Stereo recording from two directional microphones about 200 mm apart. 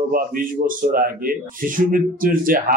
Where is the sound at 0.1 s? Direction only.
45° right (ahead or behind).